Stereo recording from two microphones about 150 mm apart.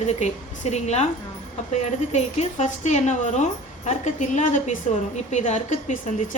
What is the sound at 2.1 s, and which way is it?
A woman's voice, 45° left (ahead or behind).